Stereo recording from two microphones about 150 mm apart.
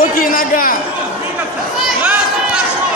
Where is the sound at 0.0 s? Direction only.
70° left (ahead or behind).